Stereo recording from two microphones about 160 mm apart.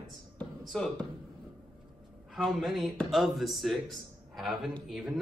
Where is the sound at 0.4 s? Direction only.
5° left (ahead or behind).